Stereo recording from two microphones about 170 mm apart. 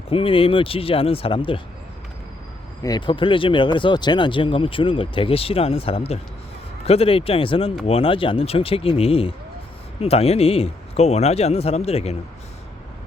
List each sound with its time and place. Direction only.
0.1 s speech: 30° left (ahead or behind)
2.8 s speech: 25° left (ahead or behind)